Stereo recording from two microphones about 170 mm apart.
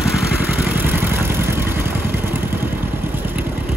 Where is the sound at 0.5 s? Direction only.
10° right (ahead or behind).